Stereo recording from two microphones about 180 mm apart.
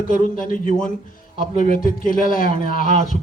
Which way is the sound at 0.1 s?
50° left (ahead or behind).